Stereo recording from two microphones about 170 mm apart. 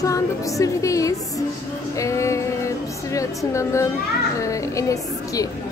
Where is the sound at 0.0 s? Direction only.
20° left (ahead or behind).